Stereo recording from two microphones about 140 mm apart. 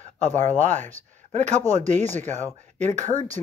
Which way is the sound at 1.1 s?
60° right (ahead or behind).